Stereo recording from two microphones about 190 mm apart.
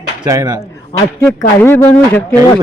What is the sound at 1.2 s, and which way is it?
Speech, 10° left (ahead or behind).